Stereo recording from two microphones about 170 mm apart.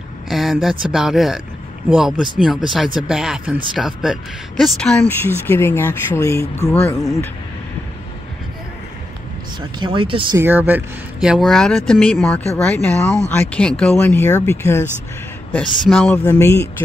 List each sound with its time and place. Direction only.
0.3 s a sound: centre (ahead or behind)
0.9 s speech: centre (ahead or behind)
9.8 s speech: 30° right (ahead or behind)
10.3 s speech: 15° right (ahead or behind); by 16.6 s 15° left (ahead or behind)